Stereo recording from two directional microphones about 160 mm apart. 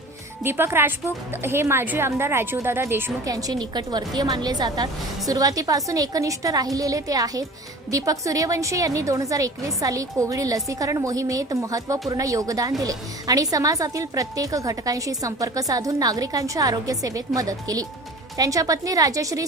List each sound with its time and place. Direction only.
0.4 s speech: 15° right (ahead or behind)